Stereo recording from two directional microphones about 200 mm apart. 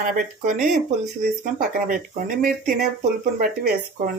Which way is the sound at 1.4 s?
45° right (ahead or behind).